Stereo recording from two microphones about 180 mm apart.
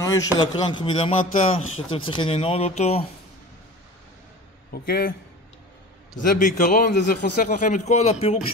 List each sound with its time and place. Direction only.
0.0 s a man's voice: 20° left (ahead or behind); by 3.1 s 35° left (ahead or behind)
6.1 s a man's voice: 45° left (ahead or behind)